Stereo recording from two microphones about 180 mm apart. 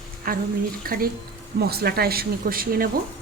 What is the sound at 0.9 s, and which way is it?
Speech, 55° right (ahead or behind).